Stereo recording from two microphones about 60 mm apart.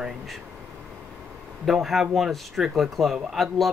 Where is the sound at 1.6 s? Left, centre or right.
Centre.